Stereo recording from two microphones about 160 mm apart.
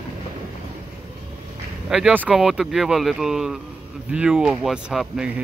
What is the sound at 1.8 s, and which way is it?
Speech, 5° right (ahead or behind).